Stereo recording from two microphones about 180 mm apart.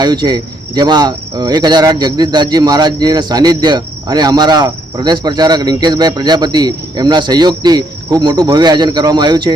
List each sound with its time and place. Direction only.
0.0 s cricket: 25° right (ahead or behind)